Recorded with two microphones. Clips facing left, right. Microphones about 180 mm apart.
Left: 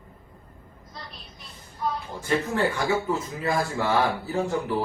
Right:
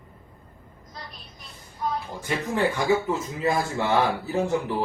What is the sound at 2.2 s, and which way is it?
Speech, 15° right (ahead or behind).